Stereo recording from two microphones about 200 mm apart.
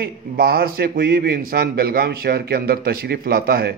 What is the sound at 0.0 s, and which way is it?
A man's voice, 50° right (ahead or behind).